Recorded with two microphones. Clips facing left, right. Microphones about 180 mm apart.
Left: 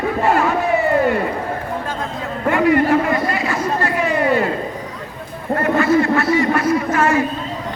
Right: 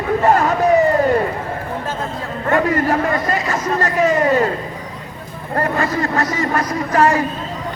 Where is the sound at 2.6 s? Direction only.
40° right (ahead or behind).